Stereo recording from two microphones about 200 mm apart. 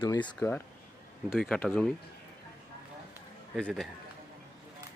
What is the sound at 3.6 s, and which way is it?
Speech, 5° left (ahead or behind).